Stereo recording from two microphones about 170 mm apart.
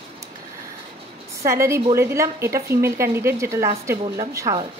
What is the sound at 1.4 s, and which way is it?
A woman's voice, 15° right (ahead or behind).